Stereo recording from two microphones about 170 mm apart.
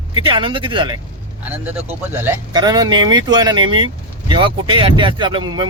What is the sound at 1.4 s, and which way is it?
Speech, 10° right (ahead or behind).